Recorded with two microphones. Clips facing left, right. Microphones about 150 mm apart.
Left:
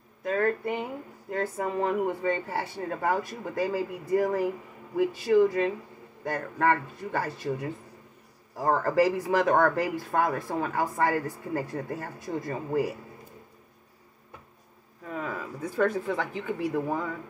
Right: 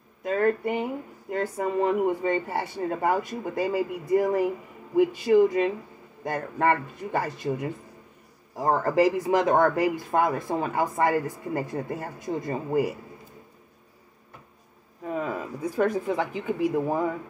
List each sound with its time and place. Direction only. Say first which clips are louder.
0.2 s speech: right 3 dB; 15° right (ahead or behind)
8.6 s speech: right 2 dB; 20° right (ahead or behind)
15.0 s speech: right 5 dB; 20° right (ahead or behind)
15.6 s speech: right 1 dB; 10° right (ahead or behind)